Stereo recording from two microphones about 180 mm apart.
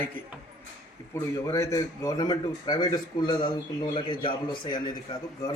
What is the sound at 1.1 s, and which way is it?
A man's voice, 15° left (ahead or behind).